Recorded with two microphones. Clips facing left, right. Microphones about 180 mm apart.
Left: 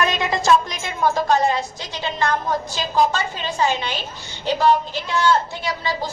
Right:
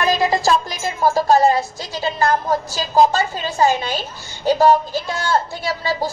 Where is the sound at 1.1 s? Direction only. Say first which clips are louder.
Right 6 dB; 35° right (ahead or behind).